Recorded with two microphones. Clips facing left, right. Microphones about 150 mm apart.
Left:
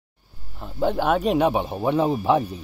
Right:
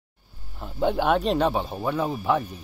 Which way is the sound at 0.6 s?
Centre (ahead or behind).